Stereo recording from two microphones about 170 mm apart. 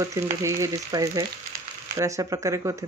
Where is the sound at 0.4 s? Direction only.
20° right (ahead or behind).